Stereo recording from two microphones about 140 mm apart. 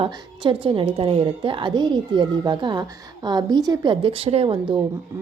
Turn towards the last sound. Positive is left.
turn(degrees=-40)  # may be behind; listen again after turning